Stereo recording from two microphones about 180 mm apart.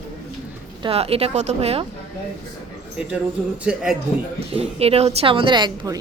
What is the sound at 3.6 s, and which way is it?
Speech, 5° right (ahead or behind).